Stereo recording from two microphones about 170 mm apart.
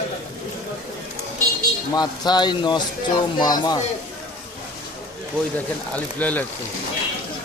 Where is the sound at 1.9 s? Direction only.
25° left (ahead or behind).